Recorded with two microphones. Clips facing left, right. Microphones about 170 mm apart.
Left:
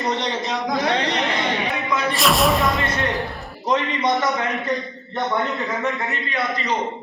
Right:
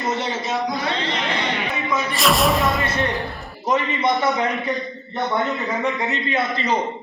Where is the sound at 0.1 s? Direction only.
5° right (ahead or behind).